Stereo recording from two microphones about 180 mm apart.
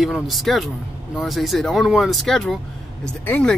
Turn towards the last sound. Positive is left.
turn(degrees=10)  # may be behind; listen again after turning